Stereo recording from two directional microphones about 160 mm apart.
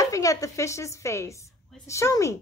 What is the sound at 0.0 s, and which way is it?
A woman's voice, 20° left (ahead or behind).